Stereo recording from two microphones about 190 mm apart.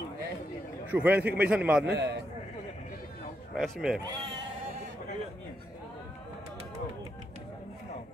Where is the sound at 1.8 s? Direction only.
65° right (ahead or behind).